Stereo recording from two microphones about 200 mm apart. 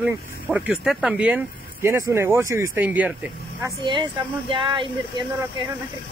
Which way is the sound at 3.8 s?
25° right (ahead or behind).